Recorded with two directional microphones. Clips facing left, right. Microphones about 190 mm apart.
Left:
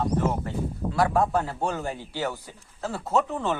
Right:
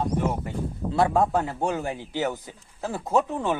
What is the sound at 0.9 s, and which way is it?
A man's voice, 20° right (ahead or behind).